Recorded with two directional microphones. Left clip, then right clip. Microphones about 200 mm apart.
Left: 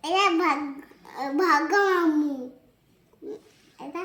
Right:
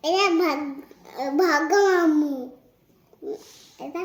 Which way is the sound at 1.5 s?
25° left (ahead or behind).